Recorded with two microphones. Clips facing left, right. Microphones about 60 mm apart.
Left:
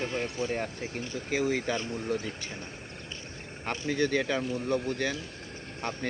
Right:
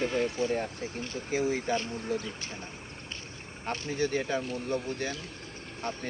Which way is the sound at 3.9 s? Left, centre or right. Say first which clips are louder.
Left 2 dB; left.